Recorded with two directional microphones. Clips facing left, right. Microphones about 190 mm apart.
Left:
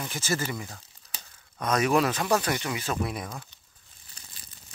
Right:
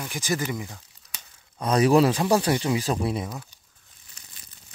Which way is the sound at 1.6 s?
30° right (ahead or behind).